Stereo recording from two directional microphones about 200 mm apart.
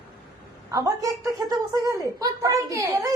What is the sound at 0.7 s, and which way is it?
A child's voice, 15° right (ahead or behind).